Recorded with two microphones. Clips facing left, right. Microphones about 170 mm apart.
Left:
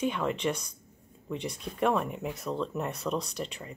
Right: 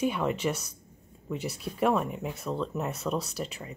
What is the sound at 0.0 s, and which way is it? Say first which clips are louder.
Speech: right 1 dB; 5° right (ahead or behind).